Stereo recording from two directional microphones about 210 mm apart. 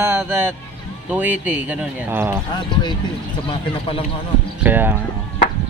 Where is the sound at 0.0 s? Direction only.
10° right (ahead or behind).